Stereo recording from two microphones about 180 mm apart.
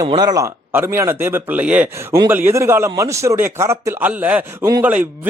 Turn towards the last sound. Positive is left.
turn(degrees=-10)  # may be behind; listen again after turning